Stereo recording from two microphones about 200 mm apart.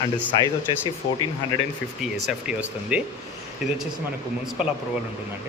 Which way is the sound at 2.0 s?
5° right (ahead or behind).